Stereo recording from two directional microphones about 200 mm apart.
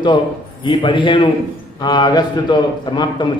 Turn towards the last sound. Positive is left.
turn(degrees=20)  # may be behind; listen again after turning